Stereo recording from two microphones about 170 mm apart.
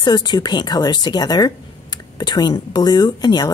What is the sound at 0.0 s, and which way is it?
Speech, 25° left (ahead or behind).